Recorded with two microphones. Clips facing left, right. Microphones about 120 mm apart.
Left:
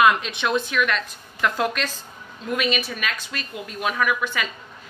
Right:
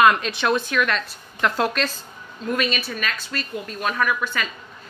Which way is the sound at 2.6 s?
15° left (ahead or behind).